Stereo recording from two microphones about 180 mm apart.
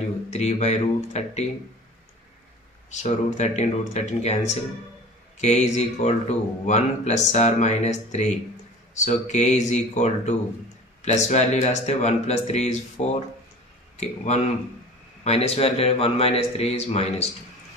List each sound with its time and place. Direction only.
0.3 s a man's voice: 40° left (ahead or behind)
2.9 s a man's voice: 40° left (ahead or behind)